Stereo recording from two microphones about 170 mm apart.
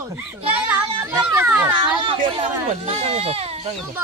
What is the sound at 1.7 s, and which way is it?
Speech, 30° right (ahead or behind).